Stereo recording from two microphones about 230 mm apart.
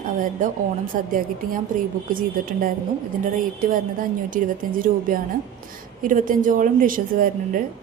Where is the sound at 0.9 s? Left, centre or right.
Right.